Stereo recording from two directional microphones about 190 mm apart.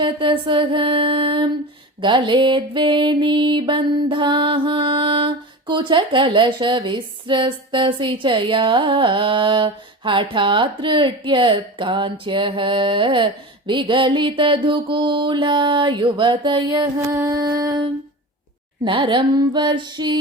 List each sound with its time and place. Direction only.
0.0 s music: 25° right (ahead or behind)
18.9 s music: 25° right (ahead or behind)